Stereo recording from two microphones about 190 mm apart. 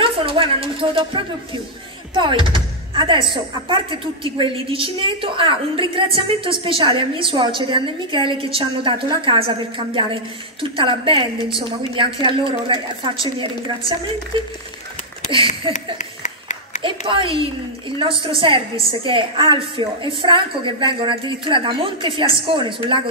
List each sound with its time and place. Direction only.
0.0 s speech: 30° right (ahead or behind)
15.7 s a sound: 40° left (ahead or behind)
16.8 s speech: 25° right (ahead or behind)